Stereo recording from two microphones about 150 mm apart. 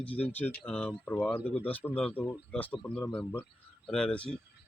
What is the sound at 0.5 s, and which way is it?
A man's voice, 10° left (ahead or behind).